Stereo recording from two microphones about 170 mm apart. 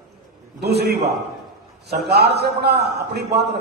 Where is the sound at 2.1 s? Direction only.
75° right (ahead or behind).